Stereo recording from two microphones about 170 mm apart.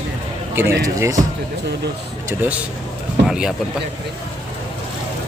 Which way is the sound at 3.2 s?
5° right (ahead or behind).